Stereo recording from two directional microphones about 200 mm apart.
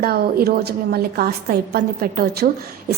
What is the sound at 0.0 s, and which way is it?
A woman's voice, 50° right (ahead or behind).